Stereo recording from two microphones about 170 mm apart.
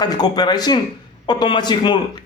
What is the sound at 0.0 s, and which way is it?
Speech, 25° left (ahead or behind).